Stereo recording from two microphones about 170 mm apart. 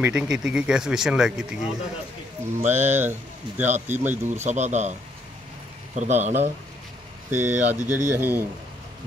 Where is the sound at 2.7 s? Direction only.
10° right (ahead or behind).